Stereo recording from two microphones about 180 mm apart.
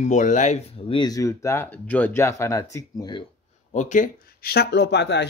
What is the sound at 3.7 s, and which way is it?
Speech, 45° left (ahead or behind).